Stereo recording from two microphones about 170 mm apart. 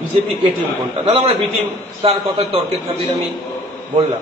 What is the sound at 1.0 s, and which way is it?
A man's voice, 30° right (ahead or behind).